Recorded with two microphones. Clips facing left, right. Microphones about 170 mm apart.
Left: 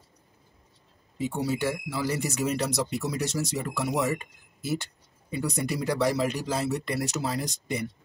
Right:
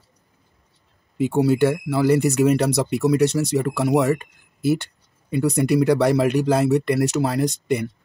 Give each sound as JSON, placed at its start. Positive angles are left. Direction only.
{"t": 1.1, "sound": "speech", "side_deg": -60}